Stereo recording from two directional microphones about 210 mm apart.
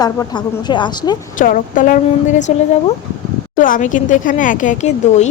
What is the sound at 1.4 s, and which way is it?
Speech, 40° left (ahead or behind).